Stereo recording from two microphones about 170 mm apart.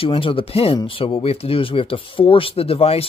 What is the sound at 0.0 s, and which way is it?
Speech, 30° left (ahead or behind).